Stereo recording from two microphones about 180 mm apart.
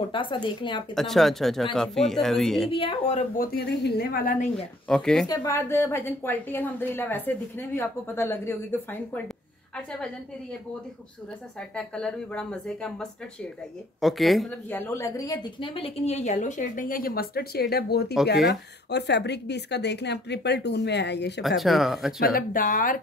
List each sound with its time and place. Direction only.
0.1 s a woman's voice: 25° left (ahead or behind)
0.9 s speech: centre (ahead or behind)
2.7 s speech: 30° left (ahead or behind)
3.3 s a woman's voice: 60° left (ahead or behind)
4.8 s speech: 5° left (ahead or behind)
5.2 s a woman's voice: 20° left (ahead or behind)
9.8 s speech: 5° left (ahead or behind)
11.7 s speech: 5° left (ahead or behind)
14.7 s a woman's voice: 15° left (ahead or behind); by 21.4 s 70° left (ahead or behind)
21.4 s speech: centre (ahead or behind)
22.2 s a woman's voice: 50° left (ahead or behind)